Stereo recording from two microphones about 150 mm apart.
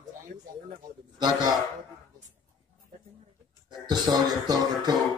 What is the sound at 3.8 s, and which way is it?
A man's voice, 30° right (ahead or behind).